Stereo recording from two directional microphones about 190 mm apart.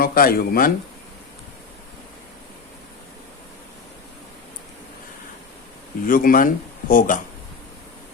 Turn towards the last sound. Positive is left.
turn(degrees=45)  # may be behind; listen again after turning